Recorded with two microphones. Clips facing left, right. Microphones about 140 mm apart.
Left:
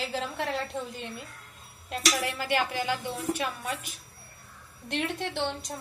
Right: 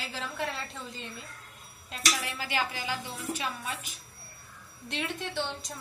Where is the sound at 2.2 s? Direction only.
60° left (ahead or behind).